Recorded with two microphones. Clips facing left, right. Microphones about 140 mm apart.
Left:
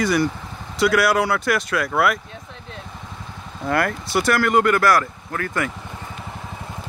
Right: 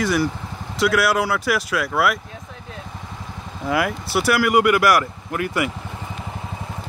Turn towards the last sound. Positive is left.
turn(degrees=-15)  # may be behind; listen again after turning